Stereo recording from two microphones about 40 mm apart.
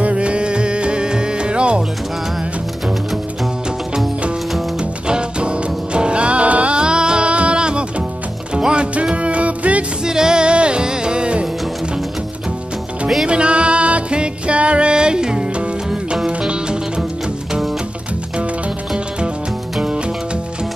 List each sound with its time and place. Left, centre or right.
0.0 s music: right
5.0 s music: right
6.8 s music: right
10.0 s music: centre
13.3 s music: right